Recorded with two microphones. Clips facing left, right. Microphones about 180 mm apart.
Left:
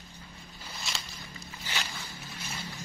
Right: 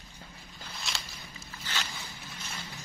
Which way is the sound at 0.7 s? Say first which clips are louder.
Left 1 dB; centre (ahead or behind).